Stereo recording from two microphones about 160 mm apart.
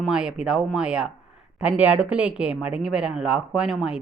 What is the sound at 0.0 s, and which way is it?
Speech, 5° right (ahead or behind).